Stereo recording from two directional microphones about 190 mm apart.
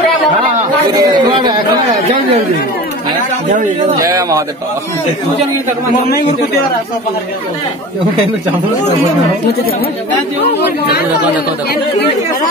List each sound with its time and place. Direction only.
0.9 s speech: 25° right (ahead or behind)
3.9 s speech: 15° right (ahead or behind)
6.0 s a man's voice: 55° left (ahead or behind)